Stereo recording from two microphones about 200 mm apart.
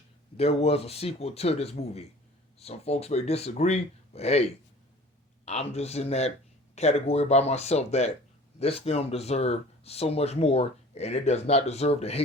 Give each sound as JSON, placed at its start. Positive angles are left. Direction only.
{"t": 0.3, "sound": "speech", "side_deg": 30}
{"t": 5.5, "sound": "speech", "side_deg": 30}